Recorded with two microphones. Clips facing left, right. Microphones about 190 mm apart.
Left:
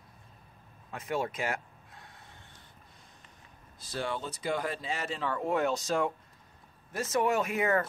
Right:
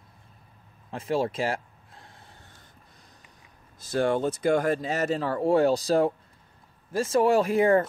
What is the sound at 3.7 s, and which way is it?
Speech, 45° right (ahead or behind).